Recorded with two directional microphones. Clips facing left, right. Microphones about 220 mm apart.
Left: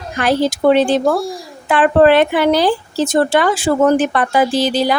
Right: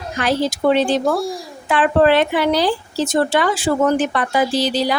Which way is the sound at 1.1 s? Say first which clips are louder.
Left 2 dB; centre (ahead or behind).